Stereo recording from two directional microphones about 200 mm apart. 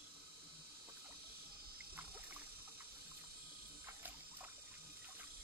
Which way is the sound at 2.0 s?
10° right (ahead or behind).